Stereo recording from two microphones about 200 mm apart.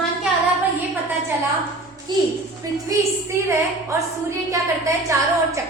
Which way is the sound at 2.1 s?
20° right (ahead or behind).